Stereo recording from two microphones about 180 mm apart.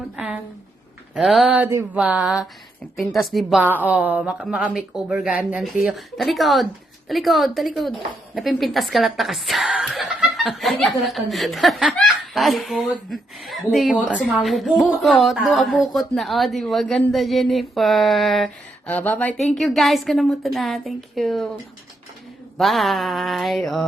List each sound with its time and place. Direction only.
1.1 s a woman's voice: centre (ahead or behind)
22.5 s a woman's voice: centre (ahead or behind)